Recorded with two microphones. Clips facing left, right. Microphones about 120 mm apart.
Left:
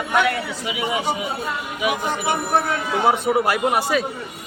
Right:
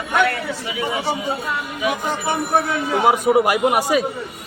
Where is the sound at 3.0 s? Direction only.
15° right (ahead or behind).